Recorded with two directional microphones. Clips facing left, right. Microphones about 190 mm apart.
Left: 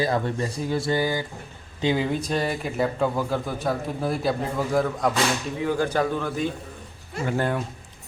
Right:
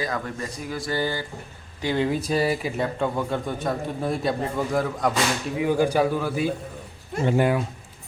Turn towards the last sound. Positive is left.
turn(degrees=-15)  # may be behind; listen again after turning